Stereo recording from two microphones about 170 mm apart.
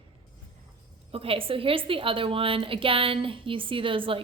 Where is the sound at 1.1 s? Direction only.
35° right (ahead or behind).